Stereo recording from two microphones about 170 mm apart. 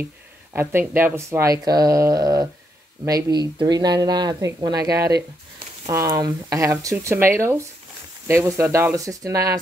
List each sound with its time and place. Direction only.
0.0 s speech: 10° right (ahead or behind)